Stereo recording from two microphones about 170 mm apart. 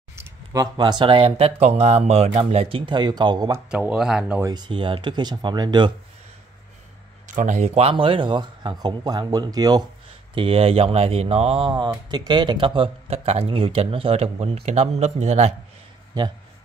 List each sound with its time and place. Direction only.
0.1 s speech: 20° right (ahead or behind)
3.7 s speech: 5° right (ahead or behind)
4.4 s speech: 25° right (ahead or behind)
7.2 s speech: 45° right (ahead or behind)